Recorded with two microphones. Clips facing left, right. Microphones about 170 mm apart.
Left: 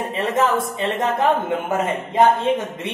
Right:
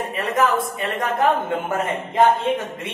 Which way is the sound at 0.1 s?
25° left (ahead or behind).